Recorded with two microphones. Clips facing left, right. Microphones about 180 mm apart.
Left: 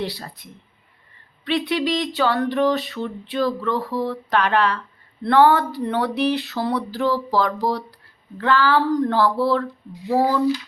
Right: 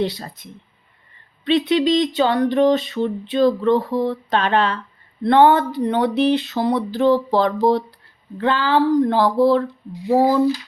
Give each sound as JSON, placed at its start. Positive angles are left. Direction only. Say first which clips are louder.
{"t": 0.0, "sound": "speech", "louder": "right 5 dB", "side_deg": -20}
{"t": 1.5, "sound": "speech", "louder": "right 5 dB", "side_deg": -20}